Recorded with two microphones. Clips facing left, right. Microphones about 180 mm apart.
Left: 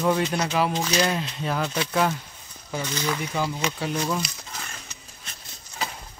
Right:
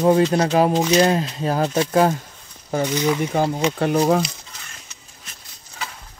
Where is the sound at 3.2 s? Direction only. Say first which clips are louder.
Right 7 dB; 45° right (ahead or behind).